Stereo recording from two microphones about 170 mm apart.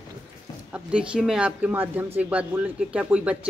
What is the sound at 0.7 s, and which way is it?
Speech, 5° right (ahead or behind).